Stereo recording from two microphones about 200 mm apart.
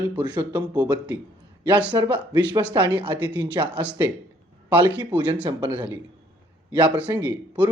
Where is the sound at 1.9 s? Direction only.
20° right (ahead or behind).